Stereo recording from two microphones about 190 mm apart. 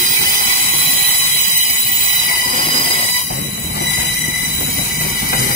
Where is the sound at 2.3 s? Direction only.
50° left (ahead or behind).